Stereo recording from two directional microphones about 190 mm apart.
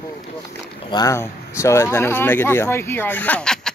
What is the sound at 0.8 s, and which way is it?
Speech, 20° left (ahead or behind).